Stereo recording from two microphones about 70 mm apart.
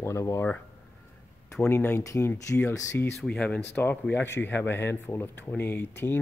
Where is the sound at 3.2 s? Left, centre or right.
Centre.